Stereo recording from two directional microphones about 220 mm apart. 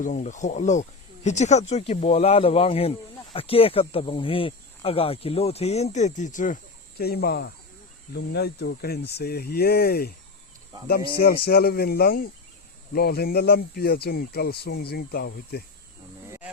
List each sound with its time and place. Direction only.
0.0 s speech: 35° left (ahead or behind)
11.4 s speech: 45° left (ahead or behind)